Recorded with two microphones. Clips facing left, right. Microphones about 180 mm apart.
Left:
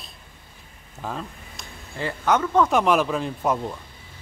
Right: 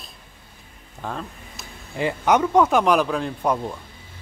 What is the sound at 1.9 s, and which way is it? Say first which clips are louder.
Speech: right 3 dB; 15° right (ahead or behind).